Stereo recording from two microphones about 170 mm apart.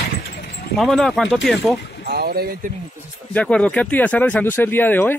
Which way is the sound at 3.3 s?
10° left (ahead or behind).